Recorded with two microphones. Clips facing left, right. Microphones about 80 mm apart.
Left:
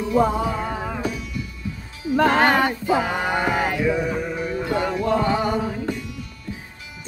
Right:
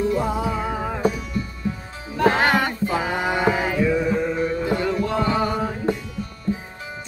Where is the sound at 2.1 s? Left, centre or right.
Left.